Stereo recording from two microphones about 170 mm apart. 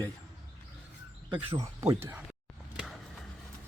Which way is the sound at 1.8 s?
15° right (ahead or behind).